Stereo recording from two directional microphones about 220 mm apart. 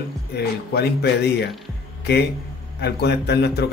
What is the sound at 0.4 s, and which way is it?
A man's voice, 45° left (ahead or behind).